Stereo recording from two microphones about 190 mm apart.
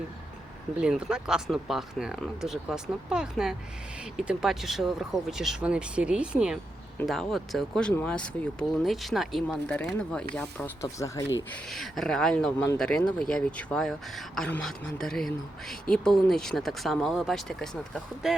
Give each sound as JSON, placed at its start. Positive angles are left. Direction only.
{"t": 0.8, "sound": "speech", "side_deg": -5}
{"t": 11.7, "sound": "speech", "side_deg": 0}